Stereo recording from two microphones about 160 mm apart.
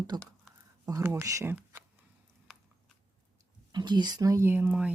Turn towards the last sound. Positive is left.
turn(degrees=-10)  # may be behind; listen again after turning